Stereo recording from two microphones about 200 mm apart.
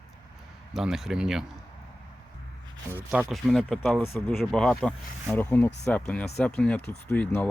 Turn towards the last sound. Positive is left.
turn(degrees=5)  # may be behind; listen again after turning